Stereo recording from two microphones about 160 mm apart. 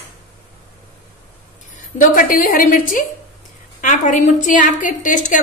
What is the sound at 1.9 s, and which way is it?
A woman's voice, 60° left (ahead or behind).